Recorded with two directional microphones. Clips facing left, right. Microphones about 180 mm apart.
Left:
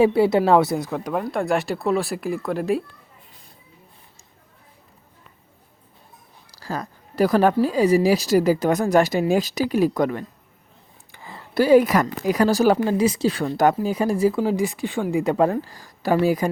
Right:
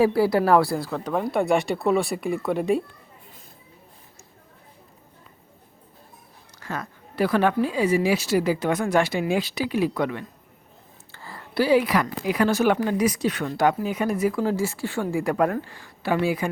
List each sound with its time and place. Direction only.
0.0 s a woman's voice: 25° left (ahead or behind)
1.2 s speech: centre (ahead or behind)
6.5 s speech: 35° left (ahead or behind)
11.1 s a sound: 15° left (ahead or behind)
11.5 s speech: 45° left (ahead or behind); by 14.4 s 30° left (ahead or behind)
14.4 s a woman's voice: 15° left (ahead or behind); by 16.5 s 40° left (ahead or behind)